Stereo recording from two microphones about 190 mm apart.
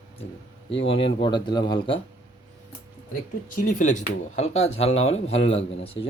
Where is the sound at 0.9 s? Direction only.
30° left (ahead or behind).